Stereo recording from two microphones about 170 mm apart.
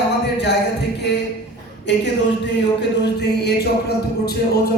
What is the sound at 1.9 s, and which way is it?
Music, 90° left.